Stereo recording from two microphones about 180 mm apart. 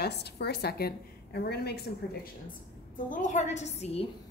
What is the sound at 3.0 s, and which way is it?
A woman's voice, 45° left (ahead or behind).